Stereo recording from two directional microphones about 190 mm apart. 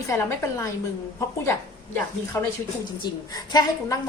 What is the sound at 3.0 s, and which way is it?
Speech, 20° left (ahead or behind).